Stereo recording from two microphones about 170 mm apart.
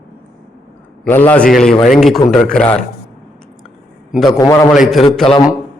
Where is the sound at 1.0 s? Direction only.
10° left (ahead or behind).